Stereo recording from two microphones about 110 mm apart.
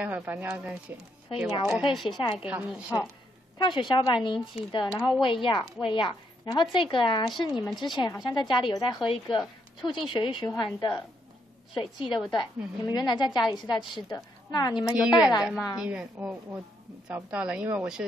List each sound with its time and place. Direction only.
0.0 s speech: 20° right (ahead or behind)
0.5 s a woman's voice: 5° right (ahead or behind)
3.5 s a woman's voice: 45° left (ahead or behind)
14.9 s speech: 5° right (ahead or behind)